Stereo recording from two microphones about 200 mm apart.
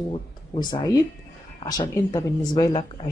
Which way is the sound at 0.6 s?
20° left (ahead or behind).